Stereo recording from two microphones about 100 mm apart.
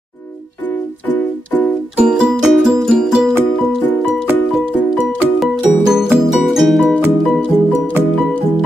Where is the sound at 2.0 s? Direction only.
10° right (ahead or behind).